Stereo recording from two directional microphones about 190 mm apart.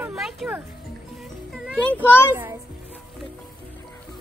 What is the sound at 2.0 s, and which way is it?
Speech, 10° left (ahead or behind).